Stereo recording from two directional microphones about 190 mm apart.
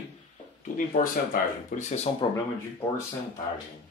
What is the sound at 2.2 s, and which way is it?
Speech, 25° left (ahead or behind).